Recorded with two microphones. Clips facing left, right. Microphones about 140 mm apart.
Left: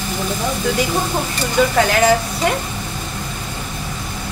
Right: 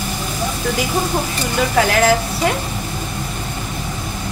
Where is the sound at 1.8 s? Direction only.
Centre (ahead or behind).